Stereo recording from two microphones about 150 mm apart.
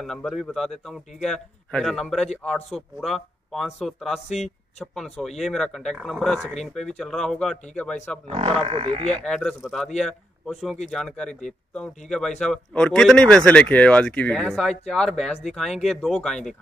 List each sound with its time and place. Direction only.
0.0 s speech: 5° left (ahead or behind)
8.6 s speech: 40° right (ahead or behind)
9.1 s speech: 5° left (ahead or behind)